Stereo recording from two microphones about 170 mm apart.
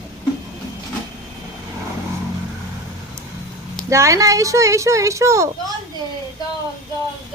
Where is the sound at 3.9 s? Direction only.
20° right (ahead or behind).